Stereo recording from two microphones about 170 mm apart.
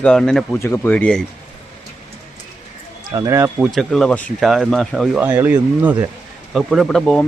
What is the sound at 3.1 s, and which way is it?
Speech, 20° right (ahead or behind).